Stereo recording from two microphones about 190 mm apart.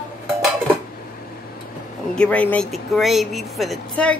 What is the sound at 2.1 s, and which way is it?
Speech, 5° left (ahead or behind).